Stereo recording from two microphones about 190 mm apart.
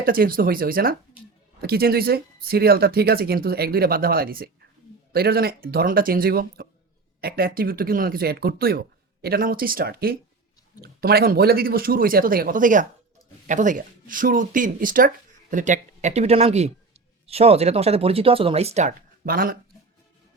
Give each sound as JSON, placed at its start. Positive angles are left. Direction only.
{"t": 0.0, "sound": "speech", "side_deg": -50}